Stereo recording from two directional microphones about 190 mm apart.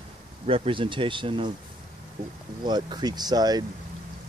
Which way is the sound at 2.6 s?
25° right (ahead or behind).